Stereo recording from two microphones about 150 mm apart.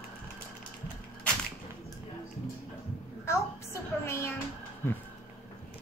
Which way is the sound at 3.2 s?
15° left (ahead or behind).